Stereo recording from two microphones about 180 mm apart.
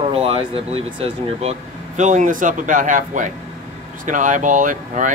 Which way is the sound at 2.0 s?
45° right (ahead or behind).